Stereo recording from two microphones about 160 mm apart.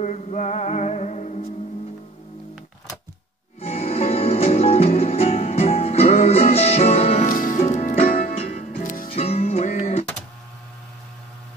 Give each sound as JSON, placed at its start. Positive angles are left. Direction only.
{"t": 0.0, "sound": "music", "side_deg": 45}
{"t": 3.6, "sound": "music", "side_deg": 40}
{"t": 7.2, "sound": "music", "side_deg": 60}
{"t": 8.2, "sound": "music", "side_deg": 40}
{"t": 8.6, "sound": "music", "side_deg": 55}
{"t": 9.1, "sound": "music", "side_deg": 40}